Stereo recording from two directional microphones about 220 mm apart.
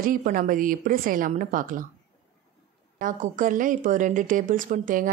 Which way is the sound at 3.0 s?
35° right (ahead or behind).